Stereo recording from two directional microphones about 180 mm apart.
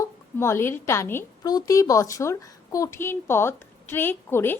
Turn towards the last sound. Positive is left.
turn(degrees=10)  # may be behind; listen again after turning